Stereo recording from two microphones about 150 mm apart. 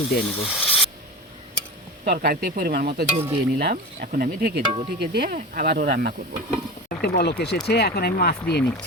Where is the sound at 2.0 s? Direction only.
90° right.